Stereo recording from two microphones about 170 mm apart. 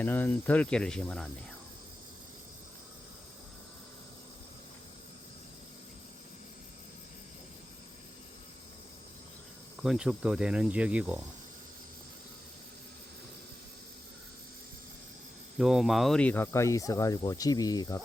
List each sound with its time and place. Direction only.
0.0 s speech: 10° left (ahead or behind)
9.7 s cricket: 5° right (ahead or behind)
15.5 s speech: 5° right (ahead or behind); by 18.0 s 20° left (ahead or behind)